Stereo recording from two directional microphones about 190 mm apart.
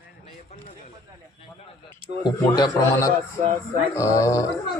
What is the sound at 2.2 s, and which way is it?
A man's voice, 20° left (ahead or behind).